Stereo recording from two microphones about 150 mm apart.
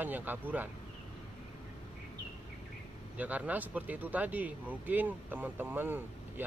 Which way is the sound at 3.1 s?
10° right (ahead or behind).